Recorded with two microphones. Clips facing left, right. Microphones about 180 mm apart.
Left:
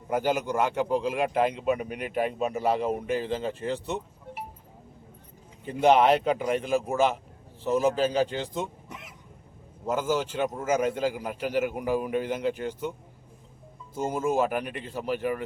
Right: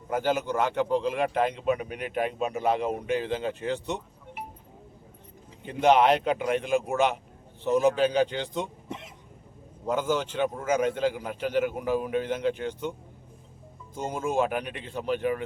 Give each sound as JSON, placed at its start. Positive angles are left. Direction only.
{"t": 0.1, "sound": "a man's voice", "side_deg": 10}
{"t": 5.6, "sound": "a man's voice", "side_deg": 5}
{"t": 8.9, "sound": "cough", "side_deg": -30}
{"t": 9.8, "sound": "a man's voice", "side_deg": 5}
{"t": 13.9, "sound": "a man's voice", "side_deg": 5}